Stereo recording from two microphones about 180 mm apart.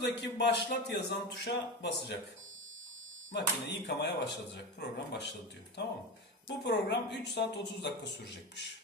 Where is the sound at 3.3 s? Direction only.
70° left (ahead or behind).